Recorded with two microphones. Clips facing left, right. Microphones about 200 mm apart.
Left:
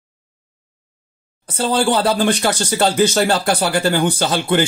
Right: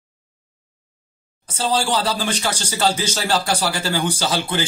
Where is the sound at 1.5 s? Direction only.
55° left (ahead or behind).